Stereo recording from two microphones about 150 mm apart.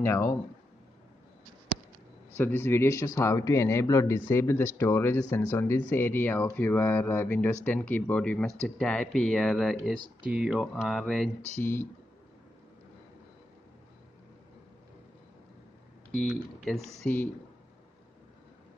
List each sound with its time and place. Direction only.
0.0 s speech: 15° left (ahead or behind)
2.3 s speech: 15° left (ahead or behind)
11.6 s speech: 15° left (ahead or behind)
16.1 s speech: 5° left (ahead or behind)